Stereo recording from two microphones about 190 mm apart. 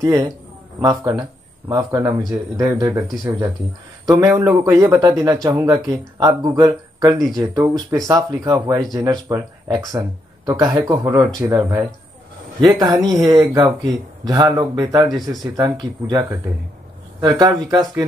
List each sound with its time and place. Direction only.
0.0 s speech: 20° right (ahead or behind)
4.0 s a man's voice: 20° right (ahead or behind)